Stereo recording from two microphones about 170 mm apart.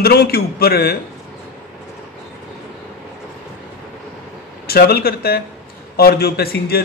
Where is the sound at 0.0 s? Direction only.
65° left (ahead or behind).